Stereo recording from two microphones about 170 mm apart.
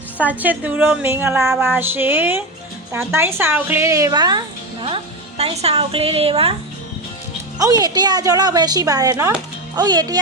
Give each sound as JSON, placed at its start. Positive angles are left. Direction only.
{"t": 0.2, "sound": "a woman's voice", "side_deg": -10}
{"t": 7.6, "sound": "speech", "side_deg": -20}